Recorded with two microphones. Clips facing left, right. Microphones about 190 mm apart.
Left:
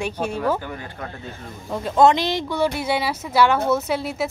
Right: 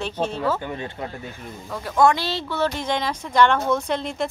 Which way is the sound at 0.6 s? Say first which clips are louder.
Right 3 dB; 20° right (ahead or behind).